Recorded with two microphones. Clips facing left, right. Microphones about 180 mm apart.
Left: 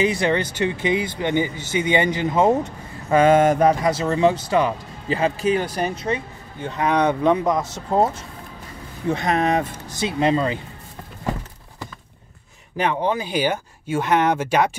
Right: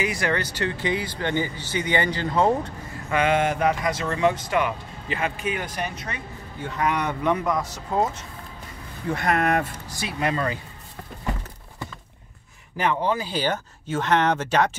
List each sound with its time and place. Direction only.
0.0 s speech: 25° left (ahead or behind)
3.1 s speech: 40° left (ahead or behind)
9.1 s speech: 20° left (ahead or behind)
12.7 s speech: 20° left (ahead or behind)